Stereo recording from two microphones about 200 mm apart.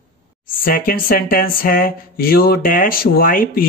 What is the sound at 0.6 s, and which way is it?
Speech, 45° left (ahead or behind).